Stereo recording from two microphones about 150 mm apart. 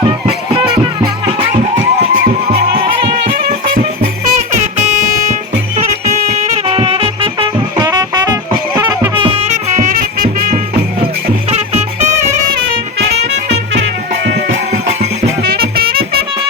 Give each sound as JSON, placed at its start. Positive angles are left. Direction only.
{"t": 4.4, "sound": "music", "side_deg": -50}
{"t": 7.8, "sound": "music", "side_deg": -25}
{"t": 9.1, "sound": "music", "side_deg": -35}
{"t": 11.5, "sound": "music", "side_deg": -45}
{"t": 15.4, "sound": "music", "side_deg": -90}